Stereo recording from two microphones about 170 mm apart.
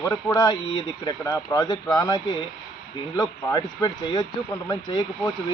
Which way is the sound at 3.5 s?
25° left (ahead or behind).